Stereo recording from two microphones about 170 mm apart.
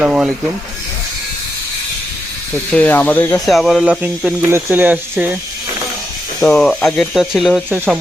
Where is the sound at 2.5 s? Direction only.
5° left (ahead or behind).